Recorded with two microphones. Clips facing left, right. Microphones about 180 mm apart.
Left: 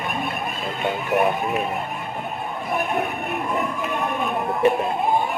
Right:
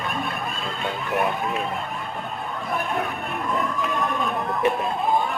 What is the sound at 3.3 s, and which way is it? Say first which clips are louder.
Speech: left 1 dB; 10° left (ahead or behind).